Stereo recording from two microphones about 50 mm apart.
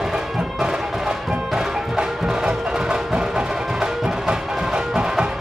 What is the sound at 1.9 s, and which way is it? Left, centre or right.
Music, centre.